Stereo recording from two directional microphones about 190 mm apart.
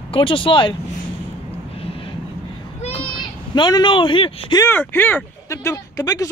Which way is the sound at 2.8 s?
30° left (ahead or behind).